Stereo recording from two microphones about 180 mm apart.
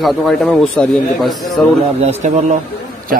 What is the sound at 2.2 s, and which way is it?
Speech, 40° right (ahead or behind).